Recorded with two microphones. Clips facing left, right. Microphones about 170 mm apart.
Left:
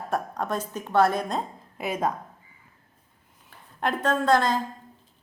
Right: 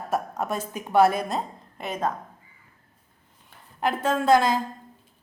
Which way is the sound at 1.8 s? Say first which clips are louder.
Left 1 dB; 10° left (ahead or behind).